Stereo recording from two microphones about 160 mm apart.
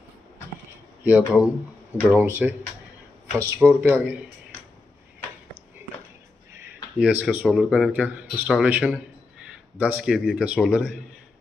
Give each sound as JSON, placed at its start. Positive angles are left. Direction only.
{"t": 1.0, "sound": "speech", "side_deg": -10}
{"t": 7.0, "sound": "speech", "side_deg": -10}